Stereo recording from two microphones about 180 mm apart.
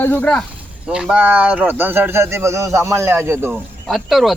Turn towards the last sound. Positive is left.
turn(degrees=0)  # may be behind; listen again after turning